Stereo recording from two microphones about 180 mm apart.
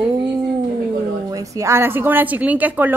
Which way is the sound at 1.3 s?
20° right (ahead or behind).